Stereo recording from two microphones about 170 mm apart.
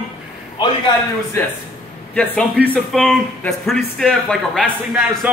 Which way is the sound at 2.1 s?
5° left (ahead or behind).